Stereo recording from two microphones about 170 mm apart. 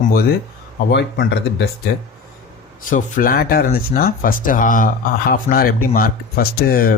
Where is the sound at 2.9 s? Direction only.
55° left (ahead or behind).